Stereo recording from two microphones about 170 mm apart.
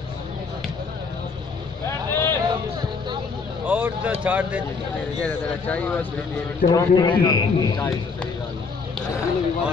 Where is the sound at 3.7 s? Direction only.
10° right (ahead or behind).